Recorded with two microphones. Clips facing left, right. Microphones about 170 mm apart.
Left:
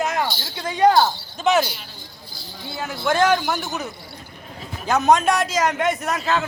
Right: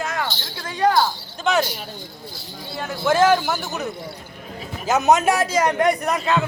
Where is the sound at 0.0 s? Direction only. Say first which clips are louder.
Left 3 dB; 20° left (ahead or behind).